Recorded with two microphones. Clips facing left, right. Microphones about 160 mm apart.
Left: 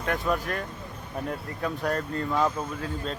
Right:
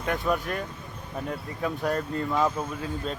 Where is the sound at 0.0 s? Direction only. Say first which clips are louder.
Even; centre (ahead or behind).